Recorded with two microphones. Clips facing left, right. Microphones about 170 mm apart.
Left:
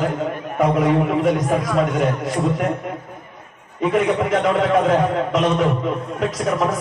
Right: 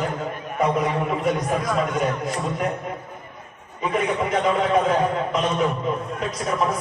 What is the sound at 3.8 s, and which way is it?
A man's voice, 75° left (ahead or behind).